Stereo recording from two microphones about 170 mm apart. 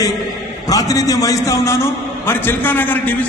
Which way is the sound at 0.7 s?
20° left (ahead or behind).